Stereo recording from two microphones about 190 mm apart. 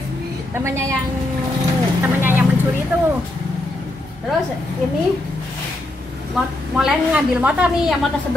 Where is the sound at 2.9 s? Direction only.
10° right (ahead or behind).